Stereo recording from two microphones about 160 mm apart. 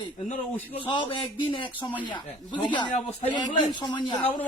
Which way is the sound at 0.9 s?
30° left (ahead or behind).